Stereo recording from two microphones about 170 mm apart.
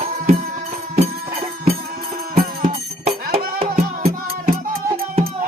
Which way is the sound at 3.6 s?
35° right (ahead or behind).